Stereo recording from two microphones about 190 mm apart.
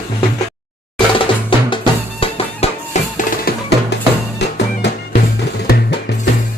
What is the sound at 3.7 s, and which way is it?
Music, 65° left (ahead or behind).